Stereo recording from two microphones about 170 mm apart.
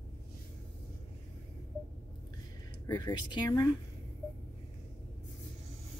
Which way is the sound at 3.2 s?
25° left (ahead or behind).